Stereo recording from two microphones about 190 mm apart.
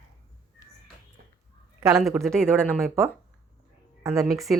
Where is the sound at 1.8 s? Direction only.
Centre (ahead or behind).